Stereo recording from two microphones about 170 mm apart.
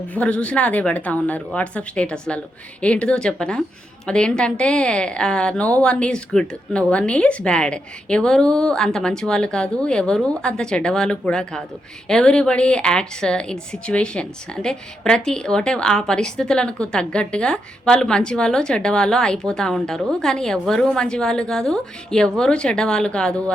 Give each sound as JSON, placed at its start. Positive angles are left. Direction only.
{"t": 0.1, "sound": "a woman's voice", "side_deg": 5}